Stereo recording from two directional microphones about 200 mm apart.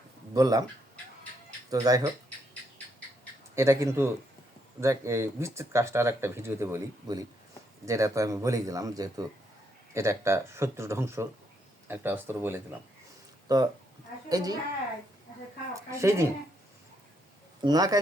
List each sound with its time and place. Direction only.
0.3 s speech: 20° right (ahead or behind)
1.7 s speech: 20° right (ahead or behind)
3.5 s speech: 15° right (ahead or behind)
15.7 s speech: 15° right (ahead or behind)
17.6 s speech: 20° right (ahead or behind)